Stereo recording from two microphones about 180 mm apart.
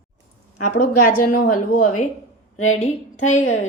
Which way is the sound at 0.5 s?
50° left (ahead or behind).